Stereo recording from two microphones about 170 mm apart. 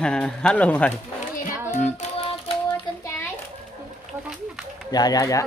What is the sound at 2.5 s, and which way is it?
Child singing, 35° left (ahead or behind).